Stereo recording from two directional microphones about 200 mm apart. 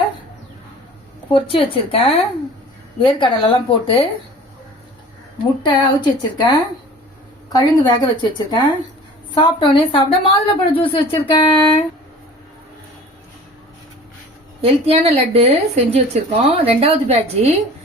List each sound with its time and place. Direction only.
1.3 s a woman's voice: 25° left (ahead or behind)
5.6 s a woman's voice: 20° left (ahead or behind)
7.5 s a woman's voice: 20° left (ahead or behind)
14.6 s speech: 30° right (ahead or behind)